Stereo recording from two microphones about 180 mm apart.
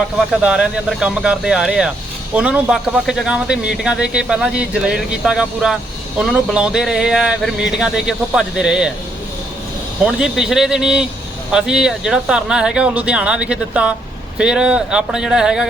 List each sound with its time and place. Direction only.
0.4 s speech: centre (ahead or behind)
10.1 s speech: 5° right (ahead or behind)